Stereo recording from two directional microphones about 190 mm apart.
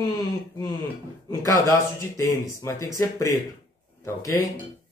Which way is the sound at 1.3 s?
20° left (ahead or behind).